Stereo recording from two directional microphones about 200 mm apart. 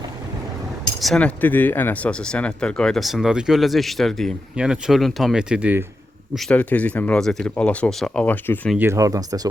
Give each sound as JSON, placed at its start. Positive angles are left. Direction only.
{"t": 1.0, "sound": "speech", "side_deg": 5}
{"t": 6.3, "sound": "speech", "side_deg": 5}
{"t": 8.8, "sound": "speech", "side_deg": -15}